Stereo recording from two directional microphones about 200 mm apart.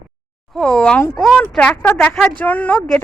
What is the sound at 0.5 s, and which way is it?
Speech, 5° left (ahead or behind).